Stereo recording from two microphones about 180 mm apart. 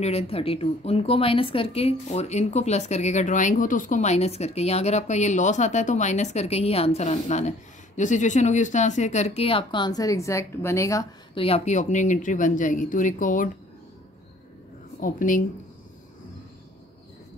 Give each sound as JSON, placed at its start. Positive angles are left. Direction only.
{"t": 0.0, "sound": "speech", "side_deg": 35}
{"t": 11.3, "sound": "speech", "side_deg": 35}
{"t": 15.0, "sound": "speech", "side_deg": 50}